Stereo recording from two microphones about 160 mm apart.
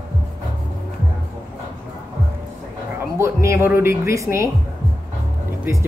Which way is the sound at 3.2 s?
15° right (ahead or behind).